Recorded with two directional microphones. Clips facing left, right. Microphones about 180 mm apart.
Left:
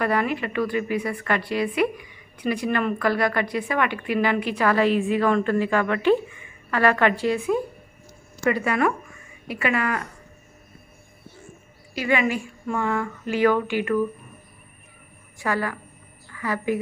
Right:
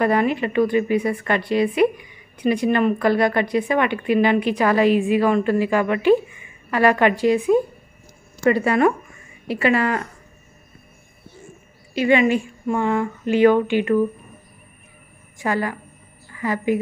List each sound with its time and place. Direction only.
0.0 s a woman's voice: 25° right (ahead or behind)
8.5 s a woman's voice: 30° right (ahead or behind)
11.9 s a woman's voice: 25° right (ahead or behind)
15.3 s a woman's voice: 20° right (ahead or behind)